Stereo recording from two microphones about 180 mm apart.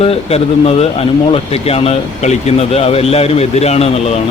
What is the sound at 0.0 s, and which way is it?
Speech, 35° left (ahead or behind).